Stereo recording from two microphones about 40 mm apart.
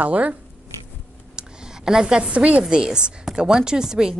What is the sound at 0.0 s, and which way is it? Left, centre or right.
Speech, right.